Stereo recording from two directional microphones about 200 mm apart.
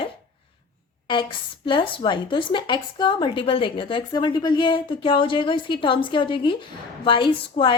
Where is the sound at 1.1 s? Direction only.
25° left (ahead or behind).